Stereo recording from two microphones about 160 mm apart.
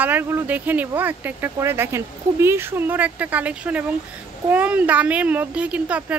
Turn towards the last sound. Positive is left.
turn(degrees=-10)  # may be behind; listen again after turning